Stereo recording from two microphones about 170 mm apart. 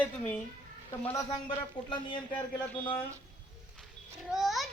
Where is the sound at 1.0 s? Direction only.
20° left (ahead or behind).